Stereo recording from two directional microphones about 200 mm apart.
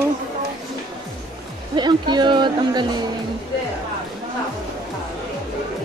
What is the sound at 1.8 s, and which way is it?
Speech, 20° right (ahead or behind).